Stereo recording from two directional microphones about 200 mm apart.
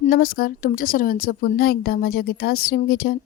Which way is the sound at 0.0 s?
50° left (ahead or behind).